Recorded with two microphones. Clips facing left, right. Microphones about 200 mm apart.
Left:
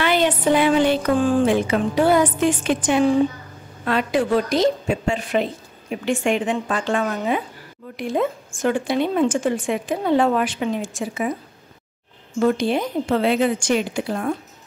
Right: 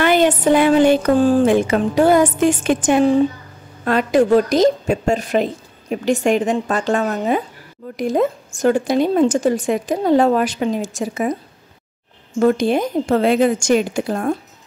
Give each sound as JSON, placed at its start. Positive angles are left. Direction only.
{"t": 0.0, "sound": "a woman's voice", "side_deg": -50}
{"t": 12.4, "sound": "speech", "side_deg": -45}